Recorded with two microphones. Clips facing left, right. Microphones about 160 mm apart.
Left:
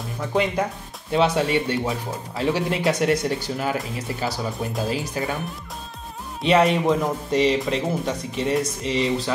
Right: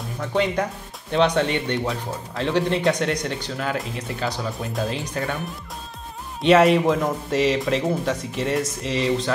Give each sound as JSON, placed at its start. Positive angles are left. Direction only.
{"t": 1.1, "sound": "speech", "side_deg": 5}
{"t": 6.4, "sound": "speech", "side_deg": 0}